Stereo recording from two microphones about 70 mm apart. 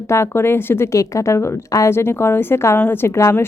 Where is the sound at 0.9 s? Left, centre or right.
Left.